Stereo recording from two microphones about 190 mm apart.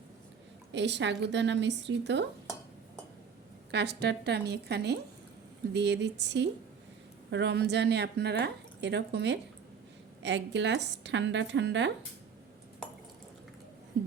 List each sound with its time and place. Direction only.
0.7 s a woman's voice: 65° right (ahead or behind)
3.7 s a woman's voice: 60° right (ahead or behind)